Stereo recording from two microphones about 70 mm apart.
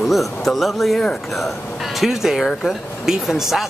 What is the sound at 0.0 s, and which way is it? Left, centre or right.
Speech, centre.